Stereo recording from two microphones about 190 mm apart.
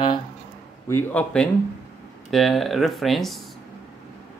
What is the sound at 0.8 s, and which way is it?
A man's voice, 10° left (ahead or behind).